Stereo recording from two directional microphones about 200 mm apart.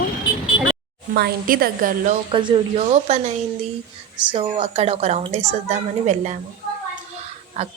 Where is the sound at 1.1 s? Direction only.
50° right (ahead or behind).